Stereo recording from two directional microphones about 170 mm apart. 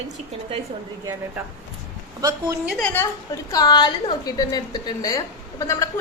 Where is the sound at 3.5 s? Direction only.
25° left (ahead or behind).